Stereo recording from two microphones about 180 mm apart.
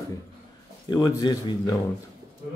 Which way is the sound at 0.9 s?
20° left (ahead or behind).